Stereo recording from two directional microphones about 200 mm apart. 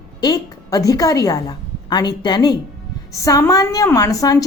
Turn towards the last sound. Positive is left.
turn(degrees=15)  # may be behind; listen again after turning